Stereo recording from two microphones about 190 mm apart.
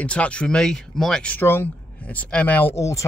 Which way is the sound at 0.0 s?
5° left (ahead or behind).